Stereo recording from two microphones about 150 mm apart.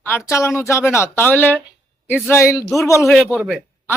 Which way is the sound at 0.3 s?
20° left (ahead or behind).